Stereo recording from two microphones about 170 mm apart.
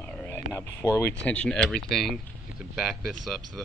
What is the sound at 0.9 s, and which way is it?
Speech, 10° left (ahead or behind).